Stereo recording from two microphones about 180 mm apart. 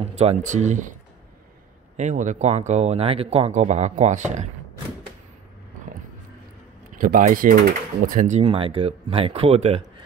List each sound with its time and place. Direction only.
0.0 s speech: 35° right (ahead or behind)
2.0 s speech: 40° right (ahead or behind)
6.9 s speech: 50° right (ahead or behind)